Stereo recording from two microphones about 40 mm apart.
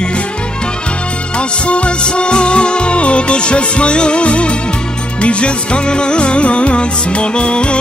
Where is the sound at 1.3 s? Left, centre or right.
Left.